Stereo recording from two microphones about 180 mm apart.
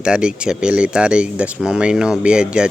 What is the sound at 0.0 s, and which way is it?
Speech, 5° right (ahead or behind).